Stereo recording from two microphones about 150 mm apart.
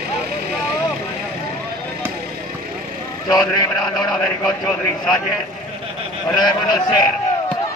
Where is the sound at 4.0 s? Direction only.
5° left (ahead or behind).